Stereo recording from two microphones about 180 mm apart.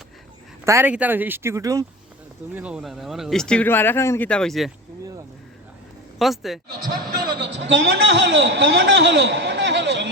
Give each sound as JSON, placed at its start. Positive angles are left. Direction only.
{"t": 0.6, "sound": "speech", "side_deg": -15}
{"t": 2.6, "sound": "speech", "side_deg": -5}
{"t": 4.3, "sound": "speech", "side_deg": 5}
{"t": 6.1, "sound": "speech", "side_deg": 0}
{"t": 7.2, "sound": "a man's voice", "side_deg": -65}